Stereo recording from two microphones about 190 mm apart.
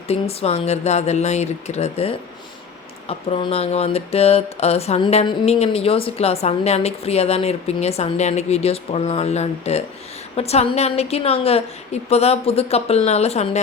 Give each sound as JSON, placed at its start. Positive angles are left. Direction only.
{"t": 0.1, "sound": "speech", "side_deg": 30}